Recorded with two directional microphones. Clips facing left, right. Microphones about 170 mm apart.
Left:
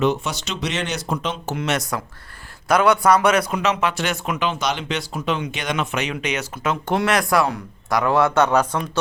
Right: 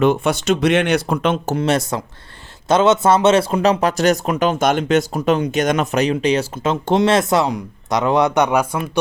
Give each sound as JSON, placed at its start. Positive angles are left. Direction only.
{"t": 0.0, "sound": "speech", "side_deg": -55}
{"t": 1.5, "sound": "speech", "side_deg": -35}